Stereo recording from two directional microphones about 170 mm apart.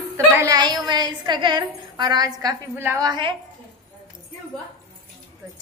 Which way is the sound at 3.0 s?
25° right (ahead or behind).